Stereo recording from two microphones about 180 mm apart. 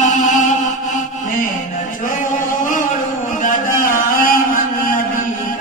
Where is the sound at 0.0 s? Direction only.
45° left (ahead or behind).